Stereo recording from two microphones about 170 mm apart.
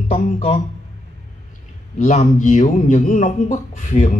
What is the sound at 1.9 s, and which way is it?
A man's voice, 45° left (ahead or behind).